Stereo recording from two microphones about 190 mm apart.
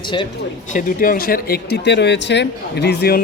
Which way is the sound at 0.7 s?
45° left (ahead or behind).